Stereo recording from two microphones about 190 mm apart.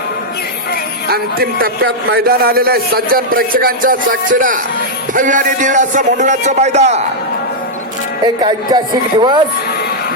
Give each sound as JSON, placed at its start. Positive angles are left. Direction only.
{"t": 1.1, "sound": "a man's voice", "side_deg": -50}
{"t": 8.2, "sound": "speech", "side_deg": -20}